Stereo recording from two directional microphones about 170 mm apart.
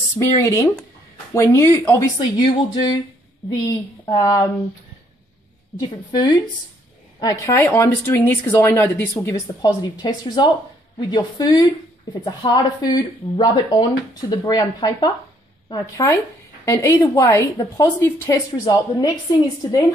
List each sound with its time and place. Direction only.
0.4 s speech: 20° left (ahead or behind)
5.8 s speech: 25° left (ahead or behind)